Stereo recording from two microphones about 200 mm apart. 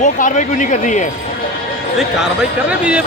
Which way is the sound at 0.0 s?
40° left (ahead or behind).